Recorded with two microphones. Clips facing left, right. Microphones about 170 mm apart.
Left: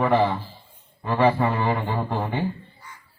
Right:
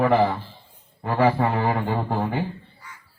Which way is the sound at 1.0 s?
70° right (ahead or behind).